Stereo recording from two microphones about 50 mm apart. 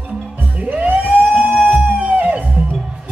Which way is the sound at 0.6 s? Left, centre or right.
Right.